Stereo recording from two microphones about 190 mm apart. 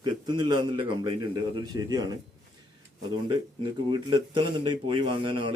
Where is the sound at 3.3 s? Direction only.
25° right (ahead or behind).